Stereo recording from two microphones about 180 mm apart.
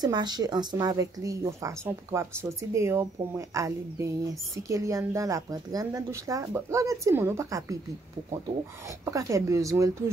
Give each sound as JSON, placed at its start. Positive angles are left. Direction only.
{"t": 0.0, "sound": "a woman's voice", "side_deg": -25}
{"t": 8.8, "sound": "speech", "side_deg": -15}